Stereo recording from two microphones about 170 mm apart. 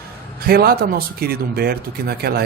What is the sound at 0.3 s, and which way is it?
A man's voice, 65° right (ahead or behind).